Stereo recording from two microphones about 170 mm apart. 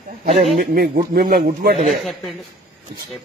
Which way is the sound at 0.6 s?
60° right (ahead or behind).